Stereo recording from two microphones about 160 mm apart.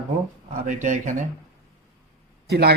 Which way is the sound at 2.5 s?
85° right.